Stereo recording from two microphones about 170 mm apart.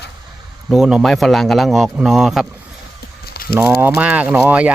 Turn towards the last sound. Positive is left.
turn(degrees=-10)  # may be behind; listen again after turning